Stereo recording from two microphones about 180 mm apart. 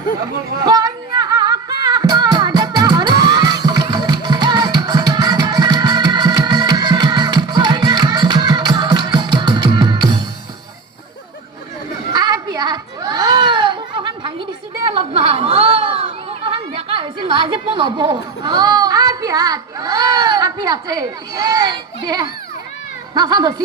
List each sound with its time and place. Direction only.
0.6 s music: 20° right (ahead or behind)
12.1 s a sound: 20° right (ahead or behind)
15.1 s chatter: 30° right (ahead or behind)
18.4 s child singing: 20° right (ahead or behind)
23.1 s a child's voice: 20° right (ahead or behind)